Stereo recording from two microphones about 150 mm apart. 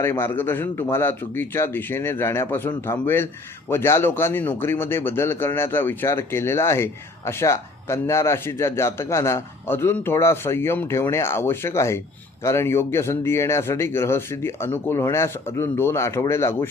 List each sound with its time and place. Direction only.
0.0 s speech: 15° left (ahead or behind)